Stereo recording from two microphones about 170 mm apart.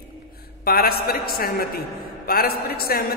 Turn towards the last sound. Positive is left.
turn(degrees=60)  # may be behind; listen again after turning